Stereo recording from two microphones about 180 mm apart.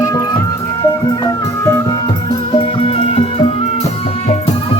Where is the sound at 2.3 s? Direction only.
30° left (ahead or behind).